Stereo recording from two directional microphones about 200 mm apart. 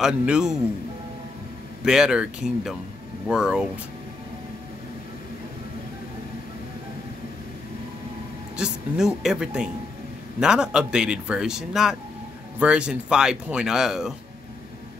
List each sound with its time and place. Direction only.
0.0 s speech: 5° right (ahead or behind)
1.9 s speech: 5° right (ahead or behind)
8.5 s speech: 5° right (ahead or behind)